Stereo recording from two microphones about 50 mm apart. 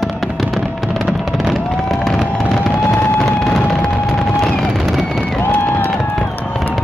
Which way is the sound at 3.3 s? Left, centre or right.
Centre.